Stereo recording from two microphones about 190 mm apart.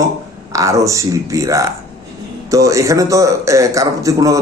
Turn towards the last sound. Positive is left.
turn(degrees=-15)  # may be behind; listen again after turning